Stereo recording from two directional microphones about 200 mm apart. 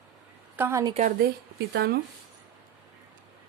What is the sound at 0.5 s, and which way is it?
Speech, 10° right (ahead or behind).